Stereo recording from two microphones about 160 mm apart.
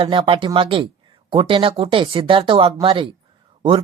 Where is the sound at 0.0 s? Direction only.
35° right (ahead or behind).